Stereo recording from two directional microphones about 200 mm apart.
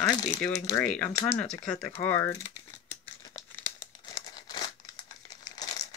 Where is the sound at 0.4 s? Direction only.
10° left (ahead or behind).